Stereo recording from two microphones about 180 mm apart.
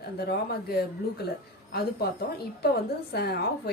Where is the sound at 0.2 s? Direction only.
60° left (ahead or behind).